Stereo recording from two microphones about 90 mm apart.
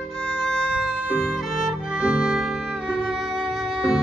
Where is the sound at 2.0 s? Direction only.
10° right (ahead or behind).